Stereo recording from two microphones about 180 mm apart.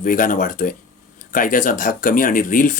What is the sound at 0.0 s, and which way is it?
Speech, 50° left (ahead or behind).